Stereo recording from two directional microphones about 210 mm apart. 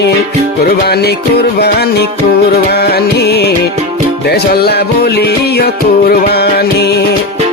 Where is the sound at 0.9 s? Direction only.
50° left (ahead or behind).